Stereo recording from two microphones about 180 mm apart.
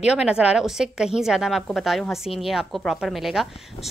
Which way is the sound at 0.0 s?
5° right (ahead or behind).